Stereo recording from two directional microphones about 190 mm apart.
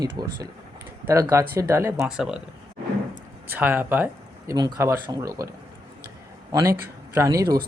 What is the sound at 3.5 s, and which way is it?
Speech, 10° right (ahead or behind).